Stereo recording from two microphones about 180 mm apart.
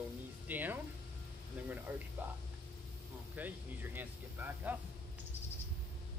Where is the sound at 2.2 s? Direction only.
10° right (ahead or behind).